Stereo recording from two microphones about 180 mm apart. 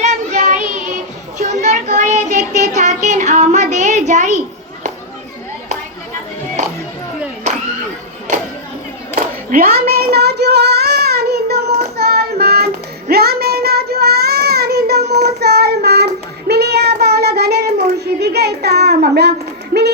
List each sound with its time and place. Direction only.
0.0 s child singing: 40° right (ahead or behind)
9.1 s a sound: 50° right (ahead or behind)
16.5 s child singing: 65° right (ahead or behind)